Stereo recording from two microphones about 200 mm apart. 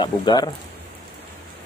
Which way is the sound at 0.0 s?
20° left (ahead or behind).